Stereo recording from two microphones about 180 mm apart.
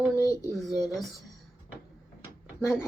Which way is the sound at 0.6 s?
Centre (ahead or behind).